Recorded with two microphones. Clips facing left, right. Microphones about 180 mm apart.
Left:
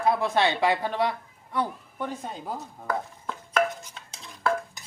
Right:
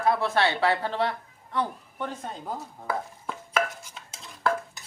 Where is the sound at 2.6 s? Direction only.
5° right (ahead or behind).